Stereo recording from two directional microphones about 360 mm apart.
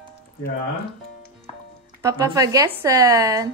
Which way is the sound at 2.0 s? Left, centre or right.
Centre.